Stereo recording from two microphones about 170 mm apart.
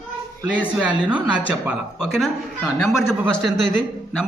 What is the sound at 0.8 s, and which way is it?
A woman's voice, 5° right (ahead or behind).